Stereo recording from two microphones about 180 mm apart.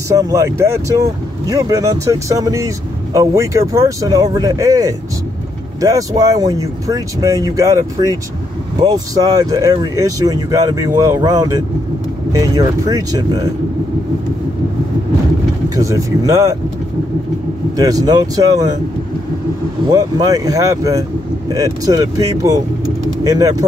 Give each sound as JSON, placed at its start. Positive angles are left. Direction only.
{"t": 0.1, "sound": "speech", "side_deg": -20}
{"t": 15.7, "sound": "speech", "side_deg": -15}
{"t": 17.7, "sound": "speech", "side_deg": -20}
{"t": 19.9, "sound": "speech", "side_deg": -20}